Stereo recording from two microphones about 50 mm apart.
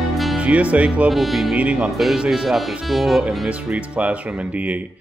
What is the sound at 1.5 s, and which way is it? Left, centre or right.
Speech, right.